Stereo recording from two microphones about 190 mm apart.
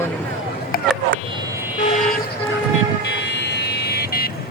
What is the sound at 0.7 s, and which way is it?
Vehicle, 50° left (ahead or behind).